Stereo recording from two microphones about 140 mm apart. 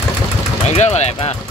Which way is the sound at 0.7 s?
50° left (ahead or behind).